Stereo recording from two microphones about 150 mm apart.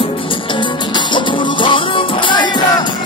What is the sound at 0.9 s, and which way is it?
Music, 35° left (ahead or behind).